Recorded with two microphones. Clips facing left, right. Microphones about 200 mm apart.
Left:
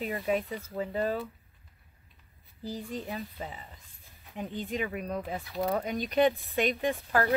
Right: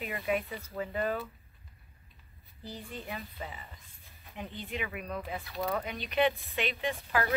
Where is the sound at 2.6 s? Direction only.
40° left (ahead or behind).